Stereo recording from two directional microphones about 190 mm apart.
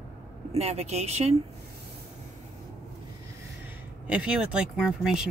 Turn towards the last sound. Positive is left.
turn(degrees=0)  # may be behind; listen again after turning